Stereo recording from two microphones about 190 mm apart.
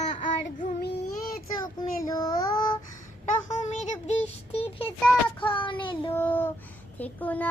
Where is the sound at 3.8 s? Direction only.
35° left (ahead or behind).